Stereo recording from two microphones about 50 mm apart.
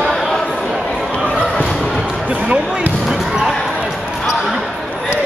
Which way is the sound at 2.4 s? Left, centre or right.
Right.